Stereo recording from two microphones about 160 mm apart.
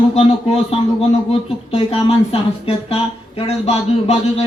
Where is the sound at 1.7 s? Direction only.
35° left (ahead or behind).